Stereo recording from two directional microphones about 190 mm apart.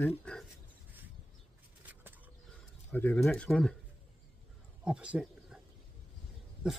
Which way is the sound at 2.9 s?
10° left (ahead or behind).